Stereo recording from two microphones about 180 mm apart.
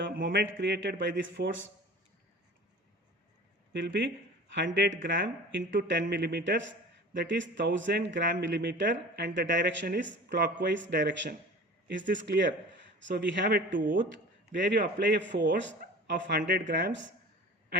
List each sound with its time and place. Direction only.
0.1 s speech: 60° right (ahead or behind); by 1.6 s 90° right
3.7 s a man's voice: 80° right
13.7 s a man's voice: 50° right (ahead or behind)
14.5 s a man's voice: 75° right (ahead or behind)